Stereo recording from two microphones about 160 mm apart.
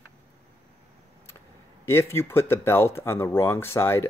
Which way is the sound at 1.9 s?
15° left (ahead or behind).